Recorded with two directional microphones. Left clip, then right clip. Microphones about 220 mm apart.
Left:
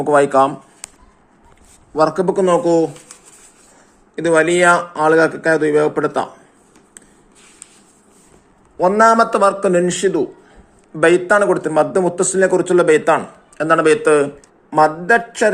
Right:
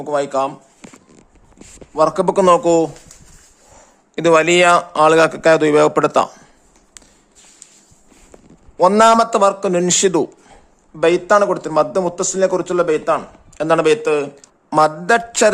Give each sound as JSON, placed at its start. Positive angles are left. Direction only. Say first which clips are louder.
{"t": 0.0, "sound": "speech", "louder": "left 6 dB", "side_deg": 0}
{"t": 2.0, "sound": "speech", "louder": "even", "side_deg": -20}
{"t": 4.1, "sound": "a man's voice", "louder": "right 2 dB", "side_deg": -50}
{"t": 4.6, "sound": "a man's voice", "louder": "right 1 dB", "side_deg": -30}
{"t": 9.0, "sound": "a man's voice", "louder": "left 1 dB", "side_deg": -20}
{"t": 9.8, "sound": "speech", "louder": "right 1 dB", "side_deg": -30}
{"t": 11.0, "sound": "a man's voice", "louder": "left 1 dB", "side_deg": -15}
{"t": 14.7, "sound": "a man's voice", "louder": "left 1 dB", "side_deg": -35}